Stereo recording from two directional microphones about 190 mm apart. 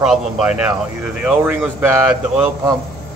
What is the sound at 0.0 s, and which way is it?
Speech, 5° right (ahead or behind).